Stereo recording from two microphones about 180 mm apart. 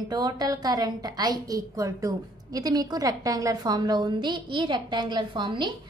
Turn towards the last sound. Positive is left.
turn(degrees=-25)  # may be behind; listen again after turning